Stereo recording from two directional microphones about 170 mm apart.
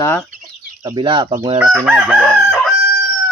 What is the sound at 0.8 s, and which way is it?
Speech, 30° right (ahead or behind).